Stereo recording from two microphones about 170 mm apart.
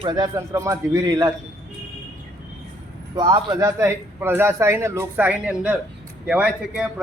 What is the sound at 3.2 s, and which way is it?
A man's voice, 25° right (ahead or behind).